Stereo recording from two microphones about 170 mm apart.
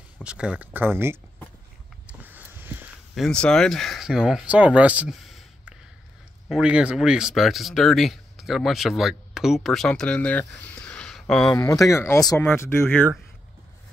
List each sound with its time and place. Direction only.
0.2 s speech: 5° right (ahead or behind)
2.0 s a sound: 10° right (ahead or behind)
3.2 s speech: 5° left (ahead or behind)
11.7 s speech: 15° left (ahead or behind)